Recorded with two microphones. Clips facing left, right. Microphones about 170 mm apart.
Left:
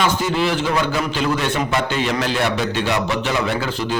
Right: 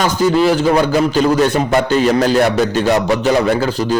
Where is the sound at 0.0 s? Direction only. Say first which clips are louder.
Right 6 dB; 40° right (ahead or behind).